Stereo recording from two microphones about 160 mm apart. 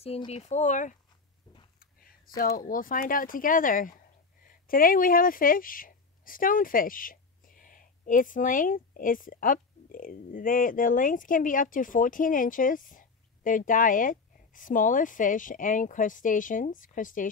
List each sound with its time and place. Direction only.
0.0 s speech: 40° left (ahead or behind)
1.8 s speech: 65° left (ahead or behind)